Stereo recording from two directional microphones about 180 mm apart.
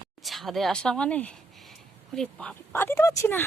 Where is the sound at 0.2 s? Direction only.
Centre (ahead or behind).